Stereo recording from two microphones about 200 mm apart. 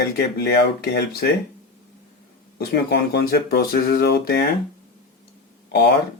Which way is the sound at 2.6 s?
50° left (ahead or behind).